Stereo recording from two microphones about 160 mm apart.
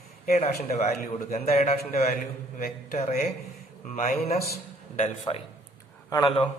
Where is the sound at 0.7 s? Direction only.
50° left (ahead or behind).